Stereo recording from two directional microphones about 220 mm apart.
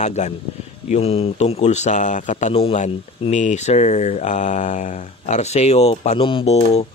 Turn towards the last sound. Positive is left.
turn(degrees=25)  # may be behind; listen again after turning